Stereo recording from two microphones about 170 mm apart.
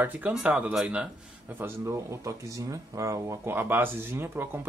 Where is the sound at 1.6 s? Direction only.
15° right (ahead or behind).